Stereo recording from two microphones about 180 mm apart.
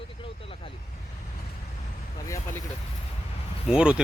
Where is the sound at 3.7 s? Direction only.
5° right (ahead or behind).